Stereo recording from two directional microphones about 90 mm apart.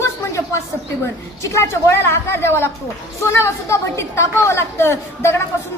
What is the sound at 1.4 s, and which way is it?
A woman's voice, 30° left (ahead or behind).